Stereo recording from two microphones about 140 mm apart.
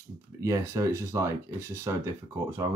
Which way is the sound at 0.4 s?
20° right (ahead or behind).